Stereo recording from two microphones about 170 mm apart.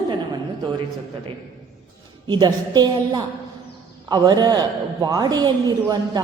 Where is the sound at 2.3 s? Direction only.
25° right (ahead or behind).